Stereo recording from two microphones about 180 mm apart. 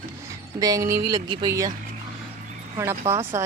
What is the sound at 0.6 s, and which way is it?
Speech, 20° right (ahead or behind).